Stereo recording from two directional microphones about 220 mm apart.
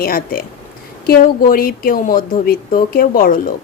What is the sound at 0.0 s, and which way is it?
A woman's voice, 40° left (ahead or behind).